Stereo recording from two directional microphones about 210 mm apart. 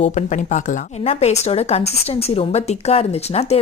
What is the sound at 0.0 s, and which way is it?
Speech, 35° left (ahead or behind).